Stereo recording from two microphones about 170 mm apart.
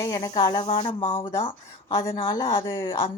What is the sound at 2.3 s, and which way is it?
Speech, 20° left (ahead or behind).